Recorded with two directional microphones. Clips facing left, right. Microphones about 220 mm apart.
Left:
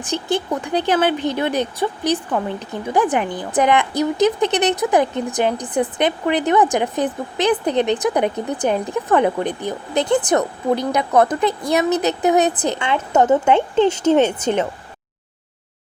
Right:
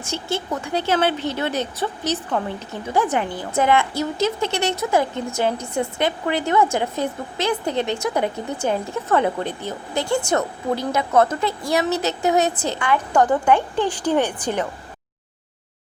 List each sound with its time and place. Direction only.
0.0 s speech: 15° left (ahead or behind)